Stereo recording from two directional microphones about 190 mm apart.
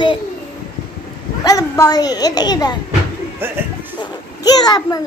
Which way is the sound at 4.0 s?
20° left (ahead or behind).